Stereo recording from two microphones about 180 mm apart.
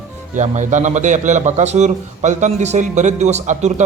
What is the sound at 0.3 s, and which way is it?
A man's voice, 40° right (ahead or behind).